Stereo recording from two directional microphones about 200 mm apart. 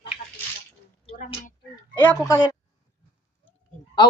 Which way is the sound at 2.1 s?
5° left (ahead or behind).